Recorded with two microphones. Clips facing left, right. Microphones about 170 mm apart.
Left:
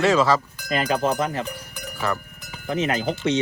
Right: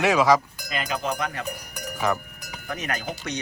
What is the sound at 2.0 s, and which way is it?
Speech, 15° right (ahead or behind).